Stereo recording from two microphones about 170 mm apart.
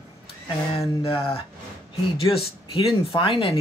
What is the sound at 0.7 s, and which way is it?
Speech, 35° left (ahead or behind).